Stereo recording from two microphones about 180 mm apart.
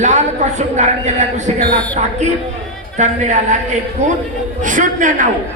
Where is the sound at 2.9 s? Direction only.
40° right (ahead or behind).